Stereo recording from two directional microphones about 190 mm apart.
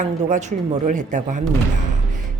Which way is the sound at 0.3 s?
40° right (ahead or behind).